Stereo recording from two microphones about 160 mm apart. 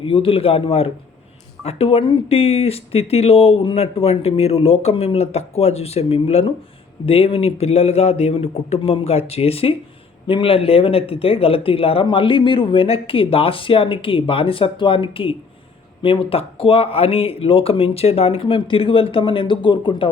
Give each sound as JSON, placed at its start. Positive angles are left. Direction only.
{"t": 0.0, "sound": "speech", "side_deg": 35}